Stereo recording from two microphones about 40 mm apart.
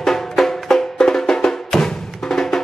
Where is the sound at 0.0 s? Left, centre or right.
Centre.